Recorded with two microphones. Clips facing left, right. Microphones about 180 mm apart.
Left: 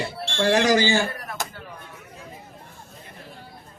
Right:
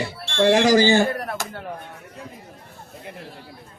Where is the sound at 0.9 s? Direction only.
60° right (ahead or behind).